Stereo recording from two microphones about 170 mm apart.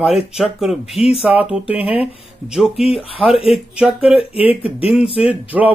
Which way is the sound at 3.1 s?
35° left (ahead or behind).